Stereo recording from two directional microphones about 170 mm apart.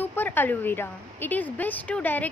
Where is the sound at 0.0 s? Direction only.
10° left (ahead or behind).